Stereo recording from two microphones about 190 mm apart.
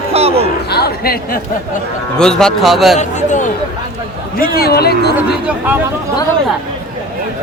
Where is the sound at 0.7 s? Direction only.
55° left (ahead or behind).